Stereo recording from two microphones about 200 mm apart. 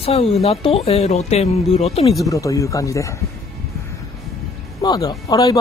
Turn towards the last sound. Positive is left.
turn(degrees=20)  # may be behind; listen again after turning